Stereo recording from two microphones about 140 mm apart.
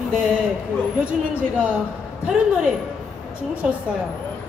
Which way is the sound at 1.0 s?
10° right (ahead or behind).